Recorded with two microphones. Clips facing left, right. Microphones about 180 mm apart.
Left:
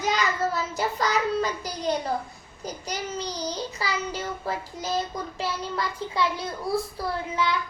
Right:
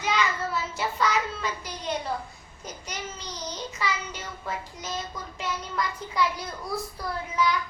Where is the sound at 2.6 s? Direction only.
35° left (ahead or behind).